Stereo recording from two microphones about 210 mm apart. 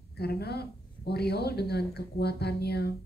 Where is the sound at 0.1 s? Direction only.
50° left (ahead or behind).